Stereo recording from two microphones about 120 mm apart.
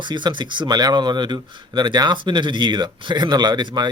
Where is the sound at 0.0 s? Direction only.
40° right (ahead or behind).